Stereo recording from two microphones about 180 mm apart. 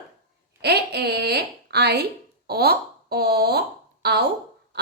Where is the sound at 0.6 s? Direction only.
65° right (ahead or behind).